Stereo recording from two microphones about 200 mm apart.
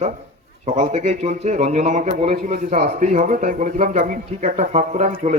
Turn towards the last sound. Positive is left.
turn(degrees=-30)  # may be behind; listen again after turning